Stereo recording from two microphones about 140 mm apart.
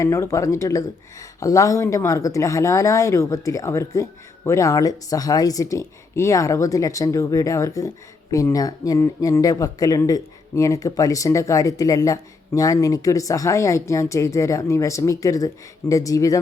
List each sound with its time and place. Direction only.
0.0 s speech: 20° left (ahead or behind)